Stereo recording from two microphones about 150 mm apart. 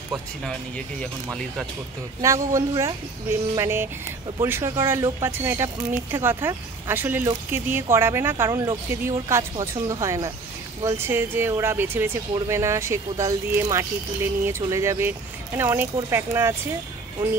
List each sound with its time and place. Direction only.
0.1 s speech: 5° left (ahead or behind)
2.2 s speech: 20° right (ahead or behind)